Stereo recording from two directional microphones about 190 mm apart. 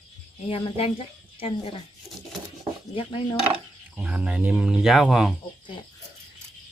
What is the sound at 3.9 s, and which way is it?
Speech, 5° right (ahead or behind).